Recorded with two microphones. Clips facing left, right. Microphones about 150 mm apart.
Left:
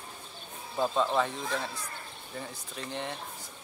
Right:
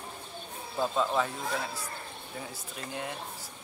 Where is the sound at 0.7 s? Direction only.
Centre (ahead or behind).